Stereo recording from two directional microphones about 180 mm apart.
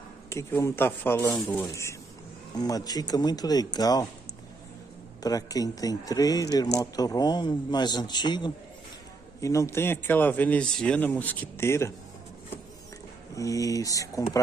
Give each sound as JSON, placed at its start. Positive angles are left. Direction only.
{"t": 0.3, "sound": "a man's voice", "side_deg": 15}
{"t": 5.2, "sound": "a man's voice", "side_deg": 20}
{"t": 13.4, "sound": "speech", "side_deg": 20}